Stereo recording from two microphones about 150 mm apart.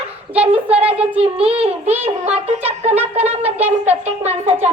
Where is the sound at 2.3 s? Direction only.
45° right (ahead or behind).